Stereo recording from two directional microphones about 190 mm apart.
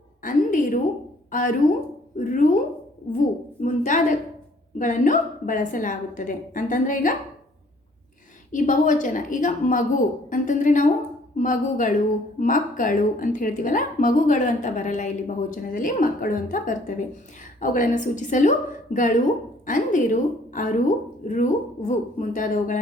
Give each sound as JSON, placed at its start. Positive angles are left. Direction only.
{"t": 0.2, "sound": "a sound", "side_deg": 45}
{"t": 1.3, "sound": "a woman's voice", "side_deg": 45}
{"t": 8.5, "sound": "a woman's voice", "side_deg": 40}